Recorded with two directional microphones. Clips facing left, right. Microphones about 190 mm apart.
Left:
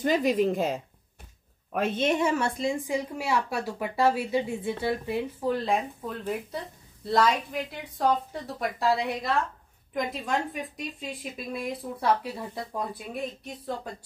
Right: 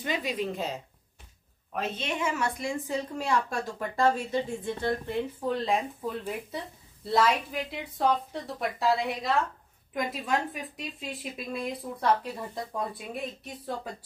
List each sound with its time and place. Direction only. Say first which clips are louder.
0.0 s a woman's voice: left 8 dB; 45° left (ahead or behind); by 13.7 s centre (ahead or behind)